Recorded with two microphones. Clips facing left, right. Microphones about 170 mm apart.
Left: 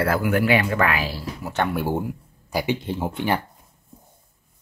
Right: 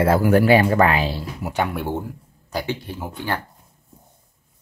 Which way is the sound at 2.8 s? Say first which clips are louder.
Left 5 dB; 25° left (ahead or behind).